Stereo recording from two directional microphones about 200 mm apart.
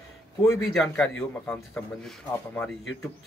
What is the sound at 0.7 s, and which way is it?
Speech, 5° left (ahead or behind).